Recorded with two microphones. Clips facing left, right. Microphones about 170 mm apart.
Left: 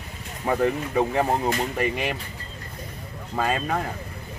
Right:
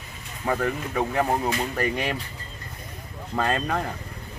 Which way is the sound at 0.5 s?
25° left (ahead or behind).